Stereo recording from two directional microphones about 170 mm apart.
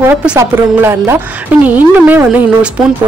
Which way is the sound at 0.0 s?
5° right (ahead or behind).